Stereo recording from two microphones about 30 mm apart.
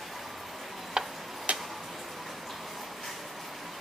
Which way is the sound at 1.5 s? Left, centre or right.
Right.